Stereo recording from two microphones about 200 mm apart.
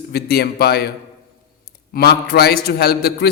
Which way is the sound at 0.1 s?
50° left (ahead or behind).